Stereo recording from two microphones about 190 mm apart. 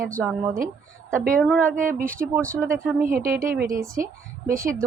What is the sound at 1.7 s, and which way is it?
A woman's voice, 45° right (ahead or behind).